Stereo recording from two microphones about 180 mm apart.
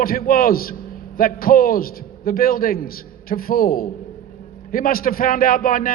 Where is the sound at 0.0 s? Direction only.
55° left (ahead or behind).